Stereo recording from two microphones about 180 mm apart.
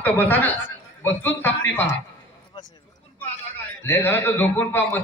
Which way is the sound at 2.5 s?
20° left (ahead or behind).